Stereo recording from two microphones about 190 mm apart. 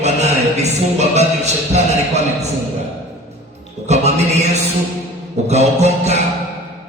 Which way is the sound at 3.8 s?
35° right (ahead or behind).